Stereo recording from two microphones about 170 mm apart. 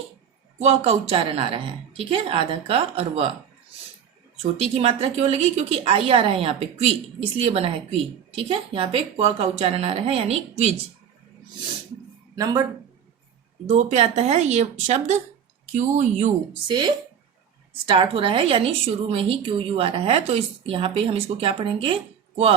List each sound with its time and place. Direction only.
0.6 s a woman's voice: 40° right (ahead or behind)
4.5 s a woman's voice: 35° right (ahead or behind)
12.4 s speech: 20° right (ahead or behind)
13.7 s a woman's voice: 40° right (ahead or behind)
16.6 s a woman's voice: 25° right (ahead or behind)